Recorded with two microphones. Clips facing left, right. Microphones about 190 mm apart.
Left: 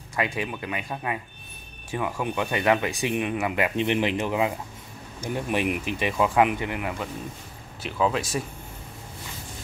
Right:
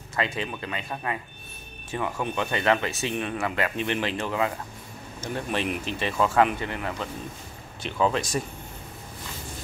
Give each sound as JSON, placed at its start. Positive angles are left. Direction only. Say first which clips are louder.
{"t": 0.1, "sound": "speech", "louder": "left 1 dB", "side_deg": 15}